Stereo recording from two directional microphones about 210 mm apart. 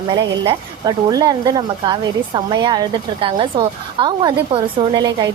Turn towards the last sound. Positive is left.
turn(degrees=-20)  # may be behind; listen again after turning